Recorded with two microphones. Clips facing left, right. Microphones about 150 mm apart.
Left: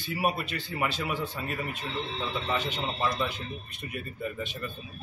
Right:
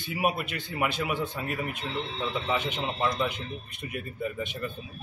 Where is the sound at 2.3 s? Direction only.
15° right (ahead or behind).